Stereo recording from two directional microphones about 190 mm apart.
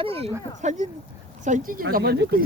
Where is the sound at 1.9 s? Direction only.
55° right (ahead or behind).